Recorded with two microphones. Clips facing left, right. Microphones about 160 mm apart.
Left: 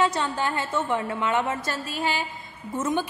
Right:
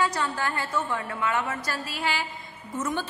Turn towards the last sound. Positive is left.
turn(degrees=20)  # may be behind; listen again after turning